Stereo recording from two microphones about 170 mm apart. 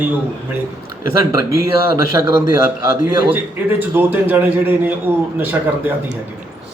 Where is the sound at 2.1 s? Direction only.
20° right (ahead or behind).